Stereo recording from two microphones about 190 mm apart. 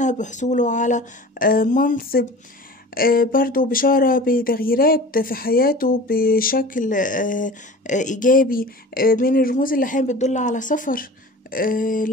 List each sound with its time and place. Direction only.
0.0 s speech: 40° left (ahead or behind)